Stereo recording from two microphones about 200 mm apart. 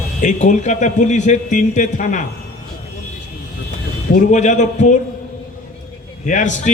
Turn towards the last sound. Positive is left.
turn(degrees=40)  # may be behind; listen again after turning